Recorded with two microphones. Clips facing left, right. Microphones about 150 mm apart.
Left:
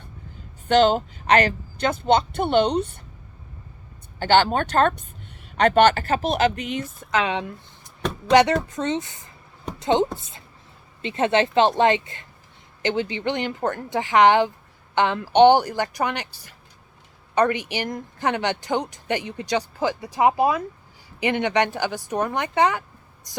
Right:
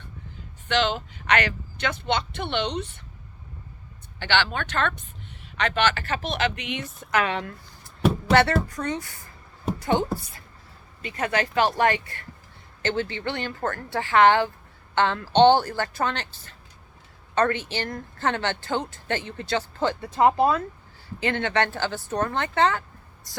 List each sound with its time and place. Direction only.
0.7 s speech: 45° left (ahead or behind)
4.2 s speech: 45° left (ahead or behind)
7.1 s a woman's voice: 20° left (ahead or behind)